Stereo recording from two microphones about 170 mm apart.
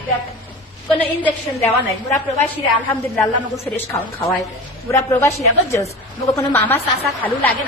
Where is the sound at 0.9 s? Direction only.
10° left (ahead or behind).